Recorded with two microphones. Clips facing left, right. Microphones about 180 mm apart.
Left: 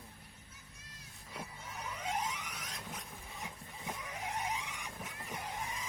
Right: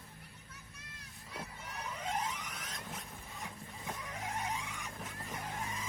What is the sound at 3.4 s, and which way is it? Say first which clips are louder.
Vehicle: even; 15° left (ahead or behind).